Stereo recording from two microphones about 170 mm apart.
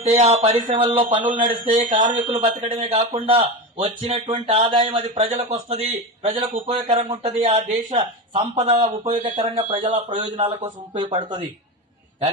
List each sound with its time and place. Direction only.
0.0 s speech: 40° right (ahead or behind)
1.4 s a man's voice: 50° right (ahead or behind)
2.2 s speech: 30° right (ahead or behind)